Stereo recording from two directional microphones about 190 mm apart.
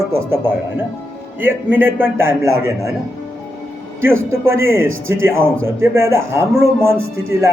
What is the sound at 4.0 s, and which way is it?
A man's voice, 15° right (ahead or behind).